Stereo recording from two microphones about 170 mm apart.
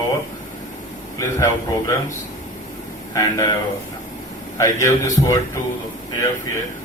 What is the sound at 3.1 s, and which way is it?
Speech, 20° left (ahead or behind).